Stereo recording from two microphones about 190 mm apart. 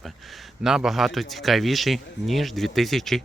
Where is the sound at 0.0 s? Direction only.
Centre (ahead or behind).